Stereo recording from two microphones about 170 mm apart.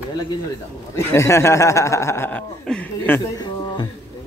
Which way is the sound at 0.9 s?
15° left (ahead or behind).